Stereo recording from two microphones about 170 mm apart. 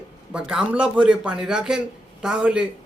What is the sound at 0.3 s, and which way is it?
A man's voice, 5° right (ahead or behind).